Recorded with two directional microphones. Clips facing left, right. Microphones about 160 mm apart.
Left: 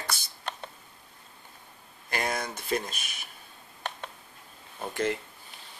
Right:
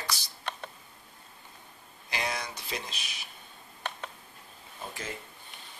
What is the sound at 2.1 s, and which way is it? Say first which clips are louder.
Speech: left 3 dB; 50° left (ahead or behind).